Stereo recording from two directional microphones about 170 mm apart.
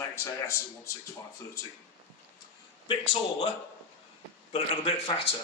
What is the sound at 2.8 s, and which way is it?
Speech, 35° left (ahead or behind).